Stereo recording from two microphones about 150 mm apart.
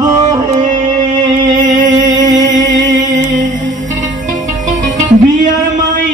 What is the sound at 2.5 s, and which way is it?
Music, 60° right (ahead or behind).